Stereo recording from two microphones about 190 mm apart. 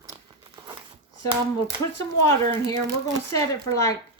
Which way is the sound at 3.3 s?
15° left (ahead or behind).